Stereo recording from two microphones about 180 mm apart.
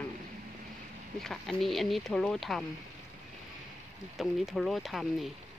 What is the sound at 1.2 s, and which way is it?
Speech, centre (ahead or behind).